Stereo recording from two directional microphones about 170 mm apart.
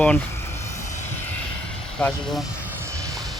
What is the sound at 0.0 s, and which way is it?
Speech, 10° left (ahead or behind).